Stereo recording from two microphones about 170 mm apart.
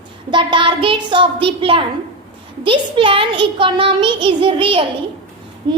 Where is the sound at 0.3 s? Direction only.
30° right (ahead or behind).